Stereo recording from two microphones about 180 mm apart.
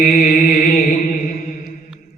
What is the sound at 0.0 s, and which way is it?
Chant, 45° left (ahead or behind).